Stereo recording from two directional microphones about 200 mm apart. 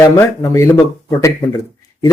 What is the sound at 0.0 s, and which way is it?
Speech, 15° left (ahead or behind).